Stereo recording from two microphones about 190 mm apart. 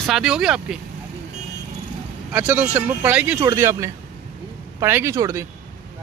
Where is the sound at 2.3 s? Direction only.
10° right (ahead or behind).